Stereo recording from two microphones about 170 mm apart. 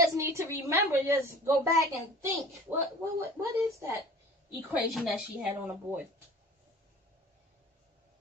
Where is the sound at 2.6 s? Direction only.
15° right (ahead or behind).